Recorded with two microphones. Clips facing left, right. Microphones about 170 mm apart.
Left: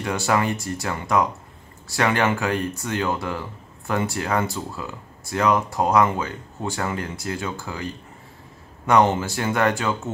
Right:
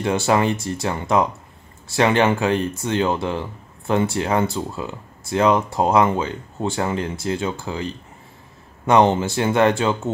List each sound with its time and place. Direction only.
0.0 s speech: 25° right (ahead or behind)